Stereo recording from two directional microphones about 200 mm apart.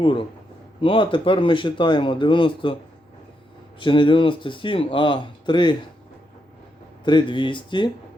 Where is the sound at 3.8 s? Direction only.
25° left (ahead or behind).